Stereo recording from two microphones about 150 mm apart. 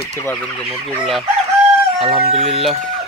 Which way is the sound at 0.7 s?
Centre (ahead or behind).